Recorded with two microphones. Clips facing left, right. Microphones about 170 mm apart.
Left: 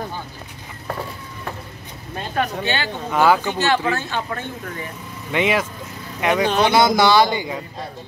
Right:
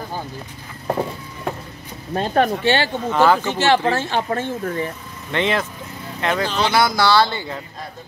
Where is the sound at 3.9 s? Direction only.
30° right (ahead or behind).